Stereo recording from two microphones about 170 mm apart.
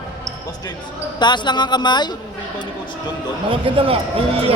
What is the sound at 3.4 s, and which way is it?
A man's voice, 35° right (ahead or behind).